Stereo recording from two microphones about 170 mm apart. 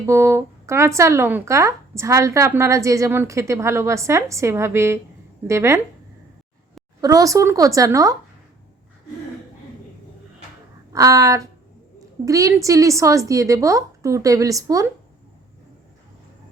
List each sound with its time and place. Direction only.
0.0 s speech: 15° right (ahead or behind)
7.0 s a woman's voice: 20° right (ahead or behind)
10.9 s a woman's voice: 20° right (ahead or behind)